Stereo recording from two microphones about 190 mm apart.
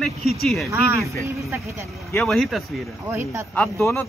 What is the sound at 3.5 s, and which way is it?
Speech, 10° left (ahead or behind).